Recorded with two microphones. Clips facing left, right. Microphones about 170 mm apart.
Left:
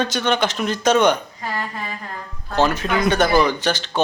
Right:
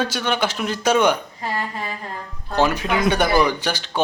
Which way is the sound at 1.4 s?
25° right (ahead or behind).